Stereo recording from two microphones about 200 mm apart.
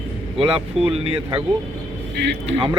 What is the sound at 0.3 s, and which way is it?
Speech, 25° right (ahead or behind).